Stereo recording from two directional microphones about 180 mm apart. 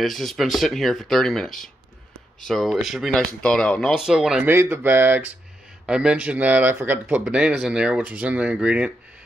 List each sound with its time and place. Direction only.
0.0 s speech: centre (ahead or behind)